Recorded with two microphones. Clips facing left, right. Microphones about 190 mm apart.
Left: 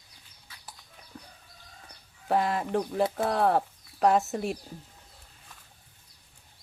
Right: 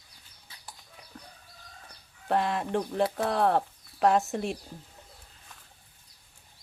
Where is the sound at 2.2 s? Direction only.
Centre (ahead or behind).